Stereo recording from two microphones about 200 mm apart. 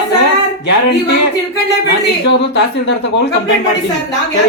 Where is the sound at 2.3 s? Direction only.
60° left (ahead or behind).